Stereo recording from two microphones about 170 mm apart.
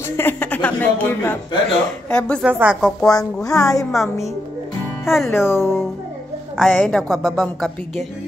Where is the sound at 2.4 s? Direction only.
10° right (ahead or behind).